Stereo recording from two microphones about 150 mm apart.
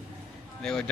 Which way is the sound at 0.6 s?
5° left (ahead or behind).